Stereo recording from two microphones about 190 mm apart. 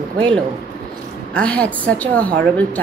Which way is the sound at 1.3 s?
5° left (ahead or behind).